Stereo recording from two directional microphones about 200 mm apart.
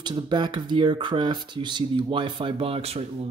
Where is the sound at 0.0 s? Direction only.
20° right (ahead or behind).